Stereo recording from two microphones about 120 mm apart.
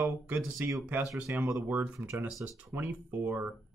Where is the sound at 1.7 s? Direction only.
10° right (ahead or behind).